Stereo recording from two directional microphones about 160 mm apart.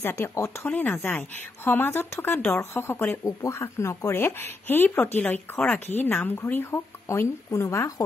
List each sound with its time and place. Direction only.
0.0 s speech: 15° left (ahead or behind)